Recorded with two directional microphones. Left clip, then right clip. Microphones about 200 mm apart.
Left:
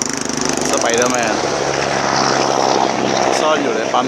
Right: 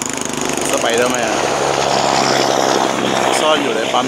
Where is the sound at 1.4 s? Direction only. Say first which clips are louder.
Right 2 dB; 35° right (ahead or behind).